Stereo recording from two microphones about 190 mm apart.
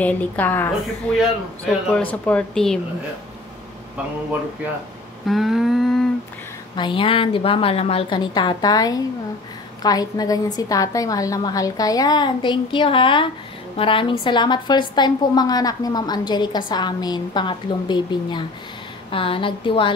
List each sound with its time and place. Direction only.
0.0 s a woman's voice: 10° left (ahead or behind)
1.7 s speech: 5° left (ahead or behind)
5.2 s a sound: centre (ahead or behind)
6.8 s a woman's voice: 25° left (ahead or behind)